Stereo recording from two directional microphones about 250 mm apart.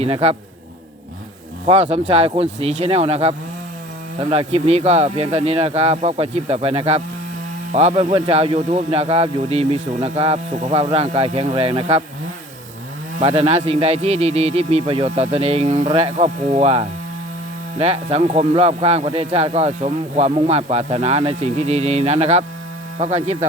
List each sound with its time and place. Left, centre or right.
0.0 s speech: right
1.6 s speech: right
13.1 s speech: right